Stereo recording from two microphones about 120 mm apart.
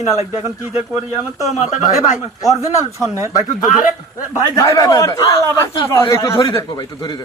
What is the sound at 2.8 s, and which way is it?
Speech, 25° right (ahead or behind).